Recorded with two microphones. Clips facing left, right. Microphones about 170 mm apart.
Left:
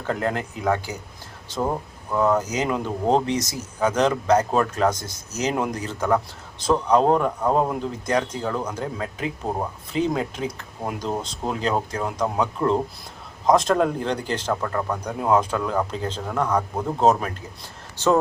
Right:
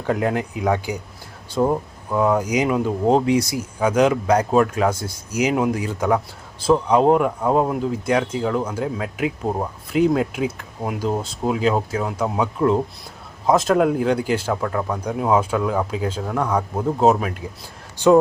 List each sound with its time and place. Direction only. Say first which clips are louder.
0.1 s speech: right 4 dB; 15° right (ahead or behind)